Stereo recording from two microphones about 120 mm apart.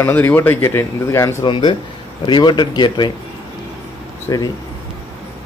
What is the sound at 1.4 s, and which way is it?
Speech, 40° left (ahead or behind).